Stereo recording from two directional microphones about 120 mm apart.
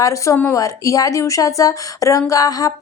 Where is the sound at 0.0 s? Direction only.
25° left (ahead or behind).